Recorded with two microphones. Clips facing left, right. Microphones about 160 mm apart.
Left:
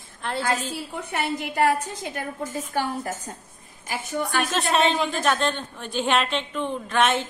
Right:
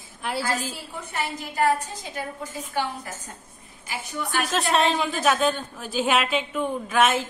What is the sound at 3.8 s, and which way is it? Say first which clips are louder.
Speech: left 4 dB; 50° left (ahead or behind).